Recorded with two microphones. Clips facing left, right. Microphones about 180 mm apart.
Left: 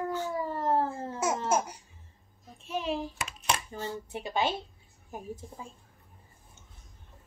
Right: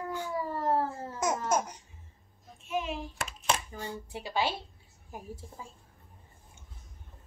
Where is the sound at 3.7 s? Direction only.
25° left (ahead or behind).